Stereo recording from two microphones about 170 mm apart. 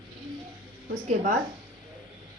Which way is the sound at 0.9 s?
45° right (ahead or behind).